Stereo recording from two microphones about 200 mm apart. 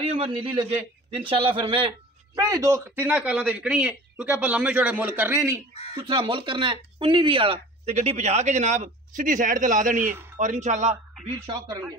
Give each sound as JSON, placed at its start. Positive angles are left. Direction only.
{"t": 0.0, "sound": "a man's voice", "side_deg": -30}
{"t": 5.9, "sound": "speech", "side_deg": -25}